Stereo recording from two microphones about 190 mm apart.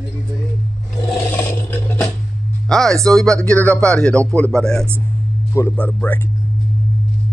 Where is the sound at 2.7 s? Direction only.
Centre (ahead or behind).